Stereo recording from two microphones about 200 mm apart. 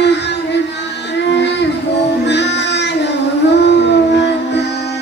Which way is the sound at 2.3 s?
60° left (ahead or behind).